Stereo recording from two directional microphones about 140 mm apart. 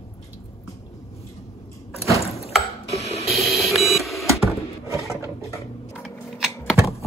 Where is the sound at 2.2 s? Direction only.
45° left (ahead or behind).